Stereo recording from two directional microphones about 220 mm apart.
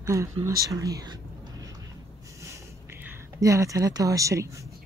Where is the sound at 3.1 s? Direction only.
15° right (ahead or behind).